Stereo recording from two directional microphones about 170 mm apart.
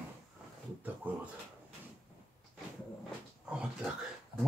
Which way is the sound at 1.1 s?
10° right (ahead or behind).